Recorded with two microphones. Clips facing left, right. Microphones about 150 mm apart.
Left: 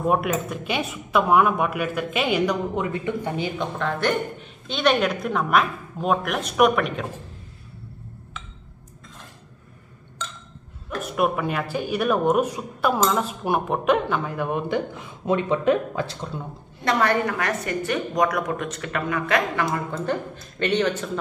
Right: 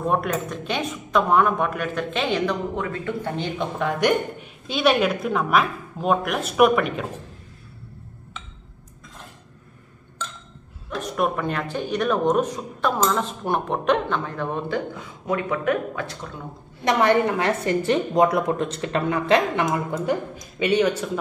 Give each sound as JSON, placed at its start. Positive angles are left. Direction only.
{"t": 0.0, "sound": "speech", "side_deg": 5}
{"t": 3.5, "sound": "a woman's voice", "side_deg": -10}
{"t": 11.0, "sound": "speech", "side_deg": 5}
{"t": 16.8, "sound": "a woman's voice", "side_deg": -20}